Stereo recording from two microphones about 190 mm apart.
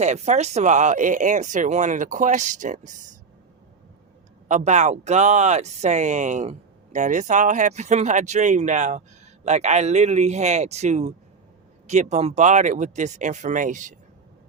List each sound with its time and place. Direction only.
0.0 s speech: 35° right (ahead or behind)
4.4 s speech: 40° right (ahead or behind)